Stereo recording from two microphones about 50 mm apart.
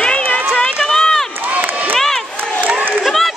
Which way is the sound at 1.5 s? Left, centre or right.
Right.